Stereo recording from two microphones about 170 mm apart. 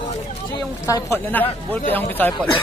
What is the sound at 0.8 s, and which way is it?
Speech, 15° left (ahead or behind).